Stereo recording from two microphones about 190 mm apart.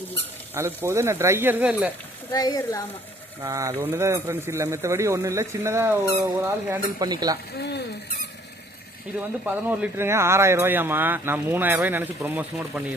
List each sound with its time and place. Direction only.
0.5 s speech: 15° right (ahead or behind)
2.3 s speech: 20° left (ahead or behind)
3.4 s speech: 15° right (ahead or behind)
7.6 s rodents: 60° left (ahead or behind)
9.4 s speech: 10° right (ahead or behind)